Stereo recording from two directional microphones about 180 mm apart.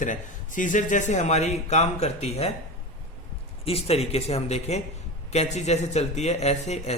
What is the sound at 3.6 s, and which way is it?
A man's voice, 35° left (ahead or behind).